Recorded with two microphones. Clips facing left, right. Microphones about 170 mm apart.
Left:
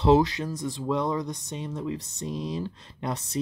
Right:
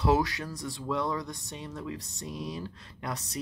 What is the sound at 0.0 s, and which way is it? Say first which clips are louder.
Speech: left 6 dB; 25° left (ahead or behind).